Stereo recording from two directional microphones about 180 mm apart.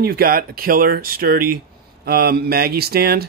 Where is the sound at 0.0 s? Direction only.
60° right (ahead or behind).